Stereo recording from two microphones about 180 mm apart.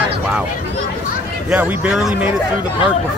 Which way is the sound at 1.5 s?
5° right (ahead or behind).